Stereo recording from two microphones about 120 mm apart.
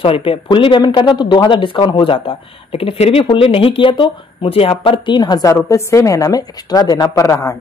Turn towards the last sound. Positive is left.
turn(degrees=25)  # may be behind; listen again after turning